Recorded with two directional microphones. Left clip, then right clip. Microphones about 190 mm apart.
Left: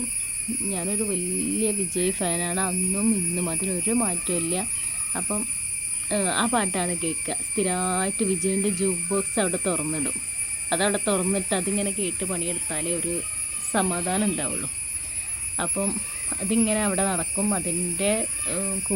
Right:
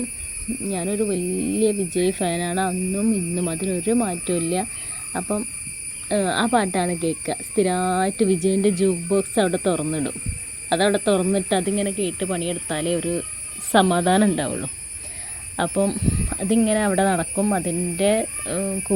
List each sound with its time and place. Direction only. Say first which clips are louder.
0.7 s speech: right 6 dB; 25° right (ahead or behind)